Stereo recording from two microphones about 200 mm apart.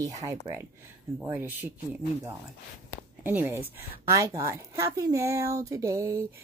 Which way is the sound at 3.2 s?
10° right (ahead or behind).